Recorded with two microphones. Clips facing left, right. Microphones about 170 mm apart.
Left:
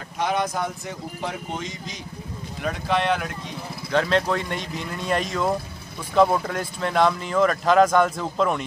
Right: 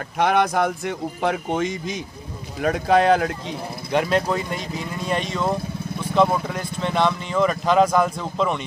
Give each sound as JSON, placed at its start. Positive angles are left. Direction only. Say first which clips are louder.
{"t": 0.2, "sound": "speech", "louder": "right 6 dB", "side_deg": -60}
{"t": 2.6, "sound": "speech", "louder": "right 6 dB", "side_deg": -45}
{"t": 3.9, "sound": "speech", "louder": "right 1 dB", "side_deg": -10}